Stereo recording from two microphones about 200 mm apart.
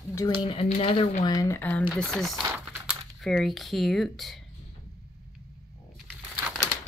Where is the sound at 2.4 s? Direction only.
15° right (ahead or behind).